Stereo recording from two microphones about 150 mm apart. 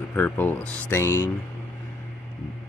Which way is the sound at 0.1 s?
15° left (ahead or behind).